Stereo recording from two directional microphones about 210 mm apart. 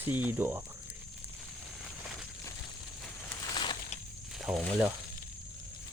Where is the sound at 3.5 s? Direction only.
20° left (ahead or behind).